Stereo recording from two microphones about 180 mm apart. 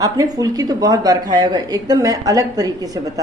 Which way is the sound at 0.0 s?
20° right (ahead or behind).